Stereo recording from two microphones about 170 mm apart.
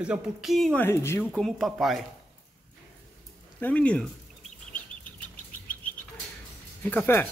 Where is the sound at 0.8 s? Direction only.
15° left (ahead or behind).